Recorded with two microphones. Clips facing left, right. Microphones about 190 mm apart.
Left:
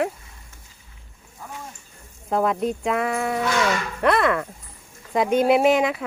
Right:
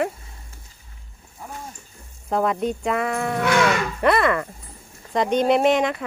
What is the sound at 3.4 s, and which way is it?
Speech, 60° right (ahead or behind).